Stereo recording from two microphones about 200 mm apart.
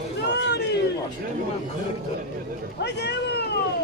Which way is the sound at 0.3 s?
55° left (ahead or behind).